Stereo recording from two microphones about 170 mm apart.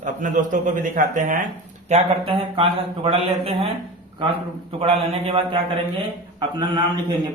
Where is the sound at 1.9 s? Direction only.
30° right (ahead or behind).